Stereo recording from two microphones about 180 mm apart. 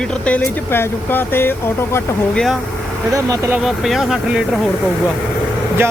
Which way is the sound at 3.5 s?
Centre (ahead or behind).